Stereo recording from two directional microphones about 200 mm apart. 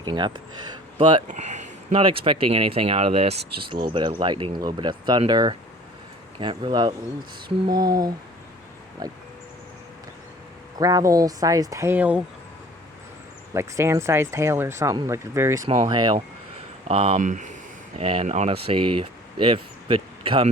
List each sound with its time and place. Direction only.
0.1 s speech: 20° right (ahead or behind)
1.3 s speech: 35° right (ahead or behind); by 9.2 s 20° right (ahead or behind)
10.8 s speech: 15° right (ahead or behind)
13.5 s speech: 15° right (ahead or behind)